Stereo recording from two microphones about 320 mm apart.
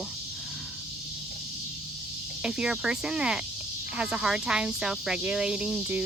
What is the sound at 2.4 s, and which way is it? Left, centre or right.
Speech, centre.